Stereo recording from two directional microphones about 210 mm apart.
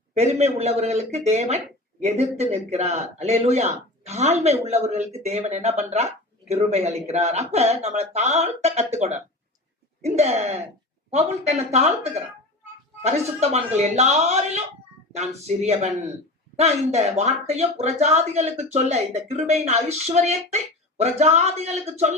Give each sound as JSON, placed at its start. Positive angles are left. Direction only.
{"t": 0.1, "sound": "speech", "side_deg": -30}